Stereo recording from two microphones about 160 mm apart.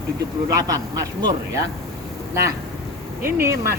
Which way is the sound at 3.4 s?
15° right (ahead or behind).